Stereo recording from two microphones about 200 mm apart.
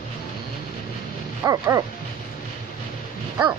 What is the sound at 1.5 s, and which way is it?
Dog, 15° right (ahead or behind).